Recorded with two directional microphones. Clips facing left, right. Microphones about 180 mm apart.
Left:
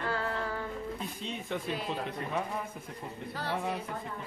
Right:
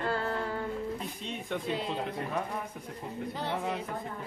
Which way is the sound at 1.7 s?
25° right (ahead or behind).